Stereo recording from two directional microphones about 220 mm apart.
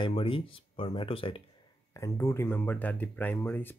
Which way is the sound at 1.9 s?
15° left (ahead or behind).